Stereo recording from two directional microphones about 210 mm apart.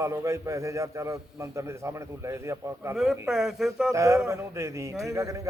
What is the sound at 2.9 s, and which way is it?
Speech, centre (ahead or behind).